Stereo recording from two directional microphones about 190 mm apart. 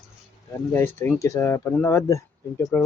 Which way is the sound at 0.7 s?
10° left (ahead or behind).